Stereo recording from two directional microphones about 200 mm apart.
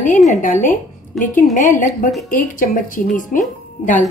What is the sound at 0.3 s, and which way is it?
A woman's voice, 40° left (ahead or behind).